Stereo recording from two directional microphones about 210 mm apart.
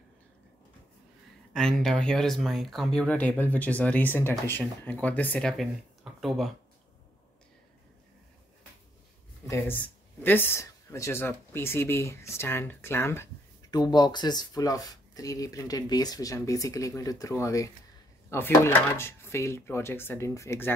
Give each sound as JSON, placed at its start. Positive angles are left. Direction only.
{"t": 1.5, "sound": "speech", "side_deg": 0}
{"t": 9.5, "sound": "speech", "side_deg": 10}